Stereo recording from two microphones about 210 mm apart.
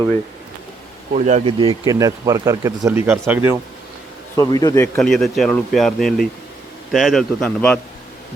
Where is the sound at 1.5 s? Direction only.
20° right (ahead or behind).